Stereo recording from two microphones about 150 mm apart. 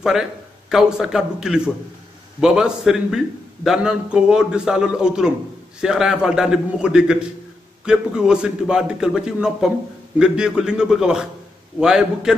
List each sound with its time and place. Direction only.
0.7 s a man's voice: 5° right (ahead or behind)